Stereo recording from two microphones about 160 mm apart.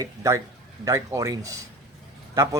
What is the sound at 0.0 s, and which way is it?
Speech, 20° right (ahead or behind).